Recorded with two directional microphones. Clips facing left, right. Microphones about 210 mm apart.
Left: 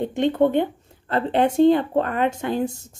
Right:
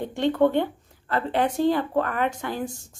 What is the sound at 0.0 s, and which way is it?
Speech, 20° left (ahead or behind).